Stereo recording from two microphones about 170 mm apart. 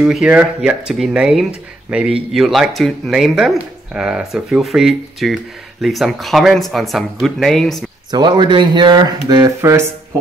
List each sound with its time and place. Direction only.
0.0 s speech: 5° right (ahead or behind)
8.1 s speech: 25° right (ahead or behind)